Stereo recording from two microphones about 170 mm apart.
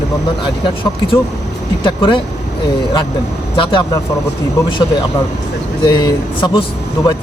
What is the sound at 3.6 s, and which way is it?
Speech, 30° left (ahead or behind).